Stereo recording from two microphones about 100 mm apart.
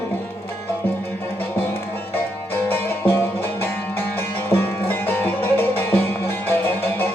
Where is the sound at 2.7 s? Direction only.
20° left (ahead or behind).